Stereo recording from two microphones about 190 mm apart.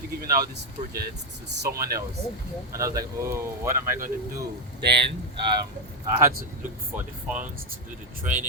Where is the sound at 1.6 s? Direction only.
50° right (ahead or behind).